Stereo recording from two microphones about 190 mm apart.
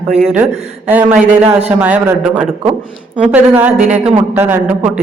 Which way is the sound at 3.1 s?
10° right (ahead or behind).